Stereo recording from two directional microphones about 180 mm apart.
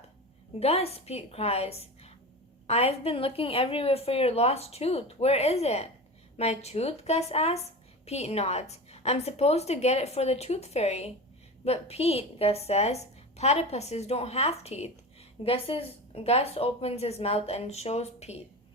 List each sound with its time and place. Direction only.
0.6 s a woman's voice: 35° left (ahead or behind)